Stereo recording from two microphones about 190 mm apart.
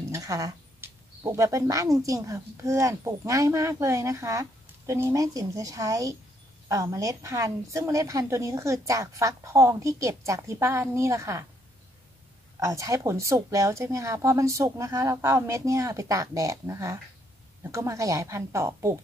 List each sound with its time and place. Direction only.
0.1 s speech: 15° right (ahead or behind)
12.5 s speech: 15° right (ahead or behind)